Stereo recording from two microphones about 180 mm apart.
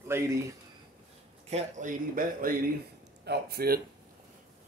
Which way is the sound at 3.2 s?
65° right (ahead or behind).